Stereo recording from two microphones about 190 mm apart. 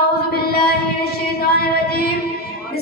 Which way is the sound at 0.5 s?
55° left (ahead or behind).